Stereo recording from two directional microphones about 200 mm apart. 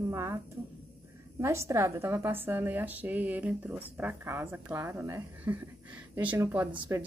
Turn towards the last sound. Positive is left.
turn(degrees=-15)  # may be behind; listen again after turning